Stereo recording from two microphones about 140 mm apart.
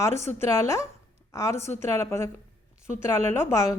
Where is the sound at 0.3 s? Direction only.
15° left (ahead or behind).